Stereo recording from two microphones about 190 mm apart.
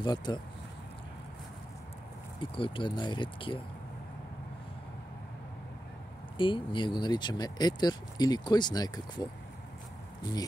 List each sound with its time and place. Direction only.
0.0 s speech: 25° left (ahead or behind)
2.5 s speech: 25° left (ahead or behind)
6.3 s speech: 25° left (ahead or behind)